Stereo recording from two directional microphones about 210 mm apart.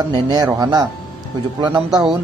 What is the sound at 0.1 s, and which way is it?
Speech, 20° right (ahead or behind).